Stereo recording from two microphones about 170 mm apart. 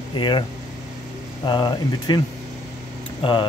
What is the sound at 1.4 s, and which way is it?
Speech, 25° left (ahead or behind).